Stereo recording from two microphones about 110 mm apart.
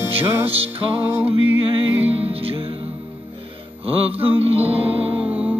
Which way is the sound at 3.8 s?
60° right (ahead or behind).